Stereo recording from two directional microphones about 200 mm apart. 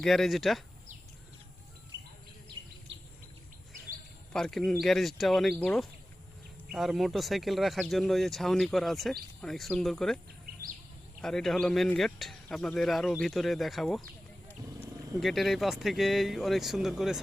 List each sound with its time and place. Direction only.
0.0 s speech: centre (ahead or behind)
4.3 s speech: 5° left (ahead or behind)
11.2 s speech: centre (ahead or behind)
15.1 s speech: centre (ahead or behind)